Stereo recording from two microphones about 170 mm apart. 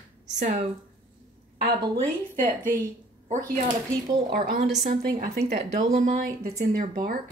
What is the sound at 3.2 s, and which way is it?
Speech, 50° right (ahead or behind).